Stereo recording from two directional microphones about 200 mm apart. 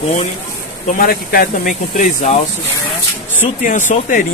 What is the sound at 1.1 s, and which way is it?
Speech, 45° left (ahead or behind).